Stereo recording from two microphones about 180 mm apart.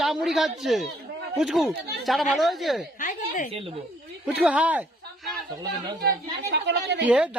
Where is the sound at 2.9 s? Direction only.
45° left (ahead or behind).